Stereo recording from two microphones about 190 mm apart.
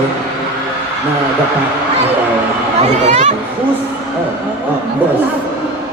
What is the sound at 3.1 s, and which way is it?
Speech, 40° right (ahead or behind).